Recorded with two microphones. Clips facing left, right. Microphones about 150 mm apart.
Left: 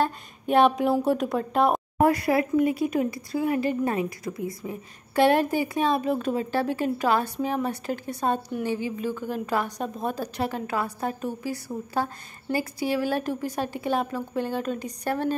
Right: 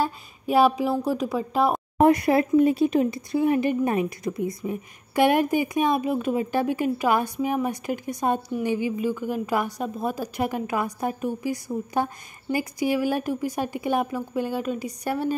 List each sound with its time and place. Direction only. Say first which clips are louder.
0.0 s a woman's voice: even; 5° right (ahead or behind)
2.0 s speech: right 4 dB; 20° right (ahead or behind)